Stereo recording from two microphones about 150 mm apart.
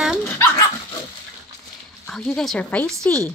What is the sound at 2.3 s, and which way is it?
Speech, 5° left (ahead or behind).